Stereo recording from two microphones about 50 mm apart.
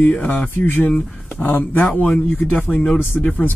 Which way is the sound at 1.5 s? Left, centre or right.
Left.